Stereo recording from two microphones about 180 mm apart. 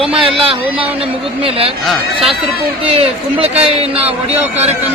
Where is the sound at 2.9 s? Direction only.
35° right (ahead or behind).